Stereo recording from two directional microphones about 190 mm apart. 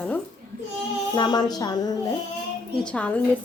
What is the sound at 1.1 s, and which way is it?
Speech, 20° left (ahead or behind).